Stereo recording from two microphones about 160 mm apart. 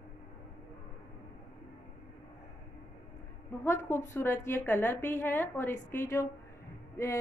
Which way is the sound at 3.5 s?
15° left (ahead or behind).